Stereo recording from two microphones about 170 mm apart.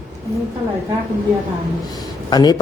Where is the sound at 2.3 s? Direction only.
25° left (ahead or behind).